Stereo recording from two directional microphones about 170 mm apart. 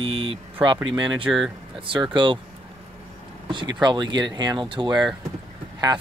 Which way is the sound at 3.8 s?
25° right (ahead or behind).